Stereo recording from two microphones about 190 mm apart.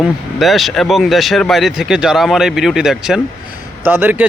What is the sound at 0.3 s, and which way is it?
Speech, centre (ahead or behind).